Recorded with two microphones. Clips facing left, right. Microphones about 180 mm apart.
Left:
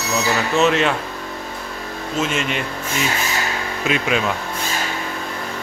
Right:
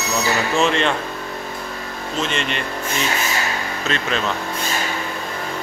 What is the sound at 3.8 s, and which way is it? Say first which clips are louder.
Speech: left 4 dB; 10° left (ahead or behind).